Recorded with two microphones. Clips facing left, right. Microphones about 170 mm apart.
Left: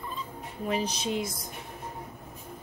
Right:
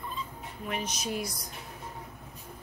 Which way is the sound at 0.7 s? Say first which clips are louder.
Left 4 dB; 30° left (ahead or behind).